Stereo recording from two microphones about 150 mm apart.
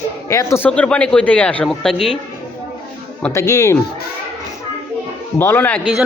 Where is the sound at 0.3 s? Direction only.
20° left (ahead or behind).